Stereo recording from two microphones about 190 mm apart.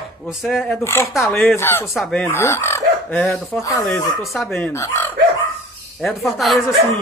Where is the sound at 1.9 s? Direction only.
Centre (ahead or behind).